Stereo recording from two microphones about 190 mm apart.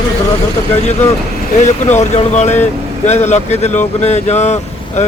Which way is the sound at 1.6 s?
35° left (ahead or behind).